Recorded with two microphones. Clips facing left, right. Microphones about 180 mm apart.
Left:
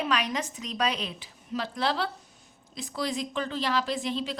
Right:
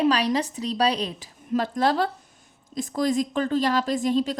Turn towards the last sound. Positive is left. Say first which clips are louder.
# right 8 dB
turn(degrees=-45)  # may be behind; listen again after turning